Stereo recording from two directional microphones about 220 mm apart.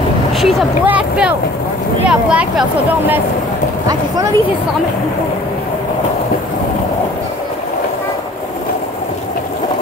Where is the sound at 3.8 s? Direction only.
15° right (ahead or behind).